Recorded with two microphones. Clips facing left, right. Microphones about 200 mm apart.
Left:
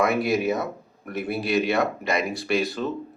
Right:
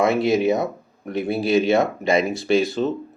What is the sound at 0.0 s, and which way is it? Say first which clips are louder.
Speech: right 4 dB; 25° right (ahead or behind).